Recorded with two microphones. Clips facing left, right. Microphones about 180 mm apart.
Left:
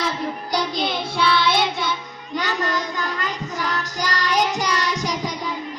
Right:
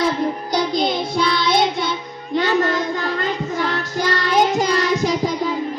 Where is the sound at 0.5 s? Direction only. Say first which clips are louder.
Right 3 dB; 50° right (ahead or behind).